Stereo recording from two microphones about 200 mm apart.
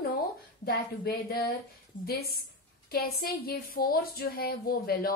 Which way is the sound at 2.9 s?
50° left (ahead or behind).